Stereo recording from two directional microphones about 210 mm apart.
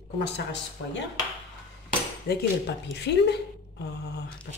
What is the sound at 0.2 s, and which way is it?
Speech, 60° left (ahead or behind).